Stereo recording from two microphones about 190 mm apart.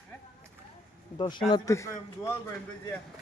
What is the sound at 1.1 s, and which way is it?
A man's voice, 25° left (ahead or behind).